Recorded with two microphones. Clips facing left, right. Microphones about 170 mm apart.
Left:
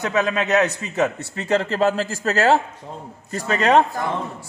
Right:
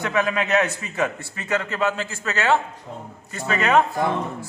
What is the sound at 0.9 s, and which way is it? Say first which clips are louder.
A man's voice: left 3 dB; 25° left (ahead or behind).